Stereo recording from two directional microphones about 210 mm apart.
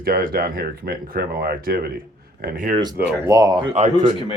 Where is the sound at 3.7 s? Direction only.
35° right (ahead or behind).